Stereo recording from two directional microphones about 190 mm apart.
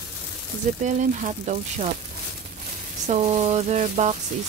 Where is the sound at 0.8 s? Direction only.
40° right (ahead or behind).